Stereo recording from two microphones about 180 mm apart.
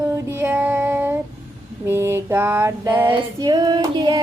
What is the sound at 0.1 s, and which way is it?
Female singing, 15° right (ahead or behind).